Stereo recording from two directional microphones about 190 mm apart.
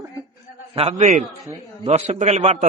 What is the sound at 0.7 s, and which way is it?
A man's voice, 35° right (ahead or behind).